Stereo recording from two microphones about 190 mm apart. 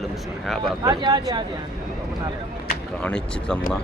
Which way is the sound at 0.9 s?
20° right (ahead or behind).